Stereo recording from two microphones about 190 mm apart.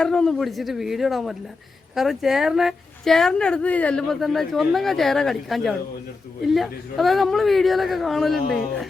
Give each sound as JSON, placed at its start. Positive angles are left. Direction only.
{"t": 0.0, "sound": "a woman's voice", "side_deg": 5}
{"t": 8.4, "sound": "a woman's voice", "side_deg": 55}